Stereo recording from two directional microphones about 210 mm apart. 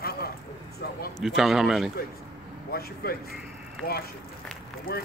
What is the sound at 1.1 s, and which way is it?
Speech, centre (ahead or behind).